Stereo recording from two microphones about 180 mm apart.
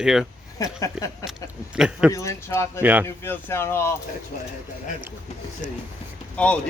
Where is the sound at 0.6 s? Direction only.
20° left (ahead or behind).